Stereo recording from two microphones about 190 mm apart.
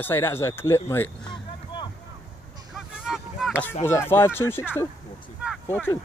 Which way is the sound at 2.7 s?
5° right (ahead or behind).